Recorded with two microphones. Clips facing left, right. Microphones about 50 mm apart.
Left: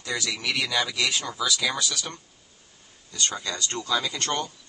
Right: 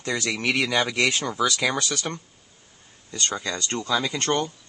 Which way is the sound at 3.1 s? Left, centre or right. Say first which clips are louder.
Right 2 dB; right.